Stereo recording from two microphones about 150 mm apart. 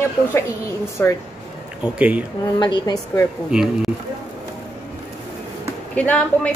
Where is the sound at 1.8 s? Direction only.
5° right (ahead or behind).